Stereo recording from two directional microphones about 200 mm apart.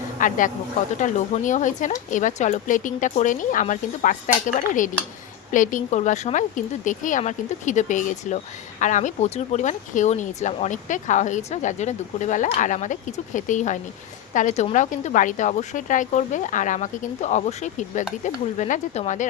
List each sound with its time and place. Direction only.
0.2 s speech: 40° left (ahead or behind)